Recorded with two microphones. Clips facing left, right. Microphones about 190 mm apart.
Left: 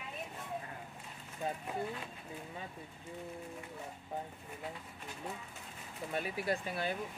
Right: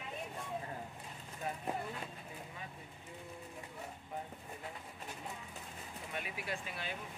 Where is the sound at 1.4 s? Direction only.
25° left (ahead or behind).